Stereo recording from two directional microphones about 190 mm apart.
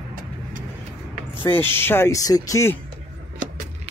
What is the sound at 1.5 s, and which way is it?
Speech, 10° left (ahead or behind).